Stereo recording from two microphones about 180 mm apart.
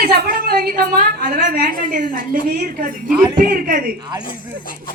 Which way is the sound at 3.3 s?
50° right (ahead or behind).